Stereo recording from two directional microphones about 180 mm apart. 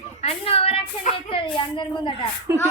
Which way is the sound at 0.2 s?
35° left (ahead or behind).